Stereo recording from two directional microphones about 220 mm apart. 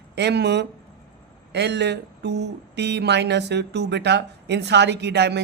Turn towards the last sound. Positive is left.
turn(degrees=-50)  # may be behind; listen again after turning